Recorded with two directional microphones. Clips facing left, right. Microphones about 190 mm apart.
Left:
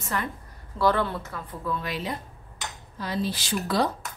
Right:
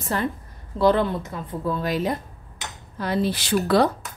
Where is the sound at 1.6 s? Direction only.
40° right (ahead or behind).